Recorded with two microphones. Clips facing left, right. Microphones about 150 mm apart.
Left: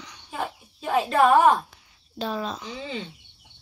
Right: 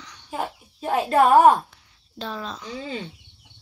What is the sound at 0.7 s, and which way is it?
Speech, 40° right (ahead or behind).